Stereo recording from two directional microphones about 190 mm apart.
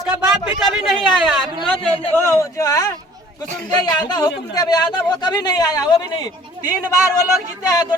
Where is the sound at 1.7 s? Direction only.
10° left (ahead or behind).